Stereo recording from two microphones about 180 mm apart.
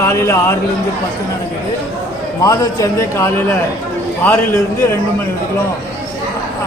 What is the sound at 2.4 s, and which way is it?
A man's voice, 20° left (ahead or behind).